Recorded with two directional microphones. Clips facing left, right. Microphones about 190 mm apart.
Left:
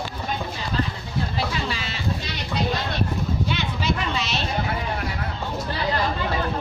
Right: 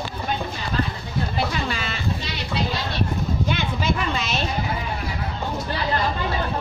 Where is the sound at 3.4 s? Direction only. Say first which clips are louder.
Right 1 dB; 50° right (ahead or behind).